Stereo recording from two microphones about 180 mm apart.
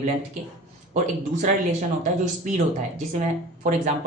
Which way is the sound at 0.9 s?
45° right (ahead or behind).